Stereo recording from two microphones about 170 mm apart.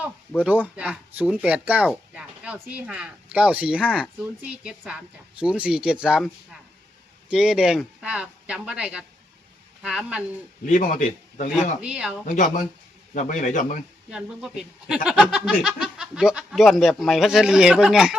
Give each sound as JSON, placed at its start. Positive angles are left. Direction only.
{"t": 0.0, "sound": "speech", "side_deg": -10}
{"t": 10.7, "sound": "a man's voice", "side_deg": 50}
{"t": 11.8, "sound": "speech", "side_deg": -5}
{"t": 12.3, "sound": "a man's voice", "side_deg": 50}
{"t": 14.1, "sound": "speech", "side_deg": -5}